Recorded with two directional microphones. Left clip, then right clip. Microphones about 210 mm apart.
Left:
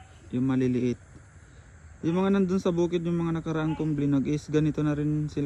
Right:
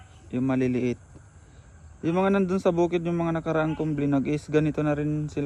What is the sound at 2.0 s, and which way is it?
A man's voice, 15° left (ahead or behind).